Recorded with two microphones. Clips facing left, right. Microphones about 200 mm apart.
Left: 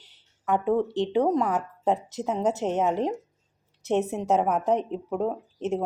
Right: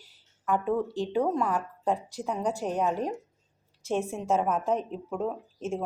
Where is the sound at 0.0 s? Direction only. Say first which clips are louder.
Left 2 dB; 20° left (ahead or behind).